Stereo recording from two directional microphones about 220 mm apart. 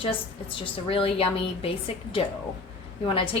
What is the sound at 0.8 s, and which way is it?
A woman's voice, 25° left (ahead or behind).